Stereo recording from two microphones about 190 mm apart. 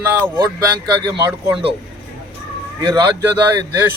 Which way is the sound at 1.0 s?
20° right (ahead or behind).